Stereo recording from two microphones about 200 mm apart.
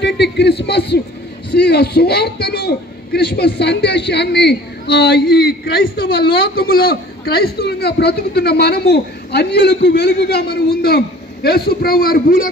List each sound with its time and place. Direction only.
0.0 s a man's voice: 55° left (ahead or behind)